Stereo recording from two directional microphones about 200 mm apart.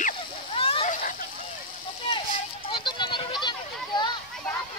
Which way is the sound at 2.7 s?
25° left (ahead or behind).